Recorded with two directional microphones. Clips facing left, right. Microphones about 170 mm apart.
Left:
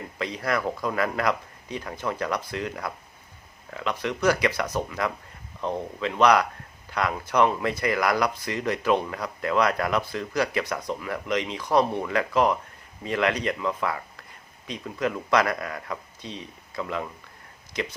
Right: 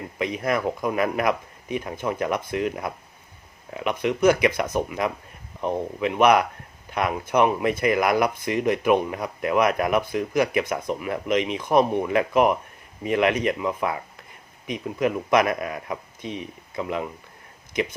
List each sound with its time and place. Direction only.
0.2 s speech: 20° right (ahead or behind)